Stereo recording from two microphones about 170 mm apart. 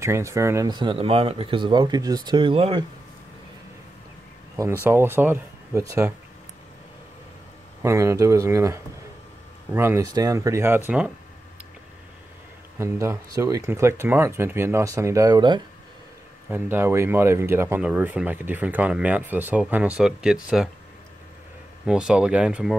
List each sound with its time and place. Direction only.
0.0 s speech: 15° right (ahead or behind)
4.8 s speech: 15° right (ahead or behind)
7.8 s speech: 15° right (ahead or behind)
12.7 s speech: 15° right (ahead or behind)
16.4 s speech: 10° right (ahead or behind)
21.8 s speech: 5° right (ahead or behind)